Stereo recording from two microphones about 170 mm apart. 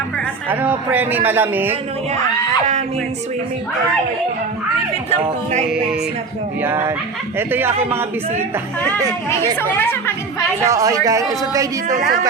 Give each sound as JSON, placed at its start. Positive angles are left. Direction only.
{"t": 0.5, "sound": "a man's voice", "side_deg": -10}
{"t": 6.6, "sound": "a man's voice", "side_deg": -15}
{"t": 9.6, "sound": "speech", "side_deg": 10}
{"t": 10.6, "sound": "speech", "side_deg": -20}